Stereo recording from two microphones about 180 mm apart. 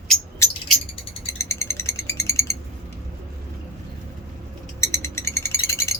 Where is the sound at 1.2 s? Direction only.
15° left (ahead or behind).